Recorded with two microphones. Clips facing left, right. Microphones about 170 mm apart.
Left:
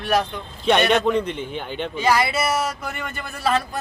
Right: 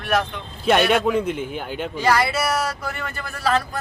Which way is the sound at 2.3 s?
25° left (ahead or behind).